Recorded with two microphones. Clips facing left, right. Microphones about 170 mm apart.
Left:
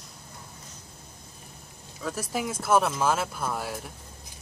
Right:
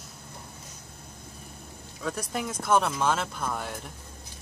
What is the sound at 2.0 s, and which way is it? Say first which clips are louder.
Speech: left 1 dB; centre (ahead or behind).